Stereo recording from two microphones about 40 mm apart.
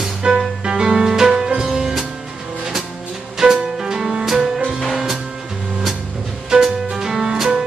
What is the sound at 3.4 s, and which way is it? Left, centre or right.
Music, centre.